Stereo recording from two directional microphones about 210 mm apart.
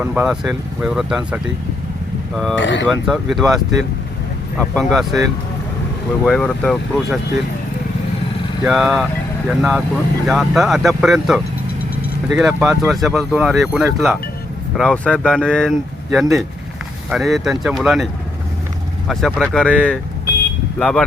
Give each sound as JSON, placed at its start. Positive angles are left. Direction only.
{"t": 0.0, "sound": "speech", "side_deg": -5}
{"t": 2.6, "sound": "speech", "side_deg": 60}
{"t": 2.9, "sound": "speech", "side_deg": 0}
{"t": 4.7, "sound": "speech", "side_deg": 0}
{"t": 6.2, "sound": "speech", "side_deg": 5}
{"t": 8.6, "sound": "speech", "side_deg": 0}
{"t": 17.1, "sound": "speech", "side_deg": 0}